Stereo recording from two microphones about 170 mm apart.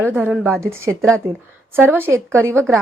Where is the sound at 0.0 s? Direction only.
10° right (ahead or behind).